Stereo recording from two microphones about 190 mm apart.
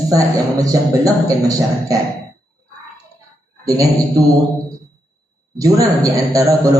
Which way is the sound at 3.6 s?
20° right (ahead or behind).